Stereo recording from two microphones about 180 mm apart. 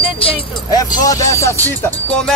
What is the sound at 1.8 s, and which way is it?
Speech, 5° left (ahead or behind).